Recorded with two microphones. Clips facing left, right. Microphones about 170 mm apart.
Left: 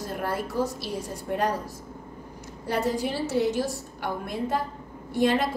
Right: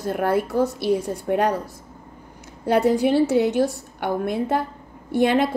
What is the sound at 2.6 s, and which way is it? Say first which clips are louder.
A woman's voice: right 8 dB; 60° right (ahead or behind).